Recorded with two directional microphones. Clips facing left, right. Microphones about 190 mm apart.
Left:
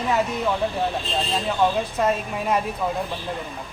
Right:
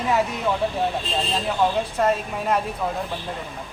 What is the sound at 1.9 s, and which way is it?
Speech, 5° left (ahead or behind).